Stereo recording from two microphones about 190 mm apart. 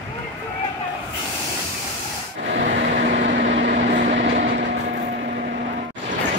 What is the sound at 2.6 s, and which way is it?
Vehicle, 45° right (ahead or behind).